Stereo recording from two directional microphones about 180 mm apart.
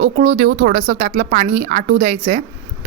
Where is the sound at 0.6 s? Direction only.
50° right (ahead or behind).